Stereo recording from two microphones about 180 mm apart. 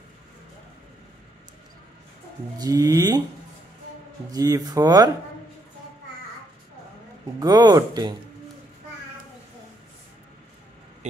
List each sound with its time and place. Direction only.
2.6 s speech: 20° right (ahead or behind)
4.3 s speech: 20° right (ahead or behind)
7.3 s speech: 20° right (ahead or behind)